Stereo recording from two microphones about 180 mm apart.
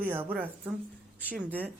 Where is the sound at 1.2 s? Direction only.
10° left (ahead or behind).